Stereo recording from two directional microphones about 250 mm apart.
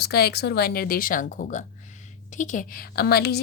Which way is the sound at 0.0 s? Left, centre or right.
Left.